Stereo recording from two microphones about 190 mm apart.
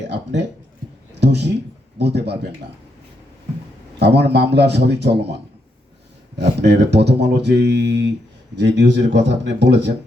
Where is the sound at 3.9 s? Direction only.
60° right (ahead or behind).